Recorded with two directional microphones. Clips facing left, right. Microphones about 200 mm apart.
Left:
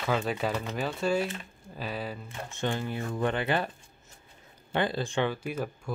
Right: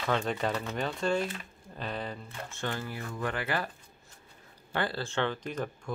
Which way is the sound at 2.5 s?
20° left (ahead or behind).